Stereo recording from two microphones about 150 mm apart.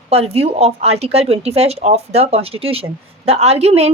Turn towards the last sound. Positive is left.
turn(degrees=-45)  # may be behind; listen again after turning